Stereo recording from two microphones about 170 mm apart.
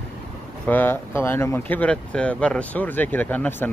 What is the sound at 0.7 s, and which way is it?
Speech, 10° left (ahead or behind).